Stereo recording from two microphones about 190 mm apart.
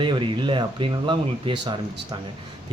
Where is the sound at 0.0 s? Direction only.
25° right (ahead or behind).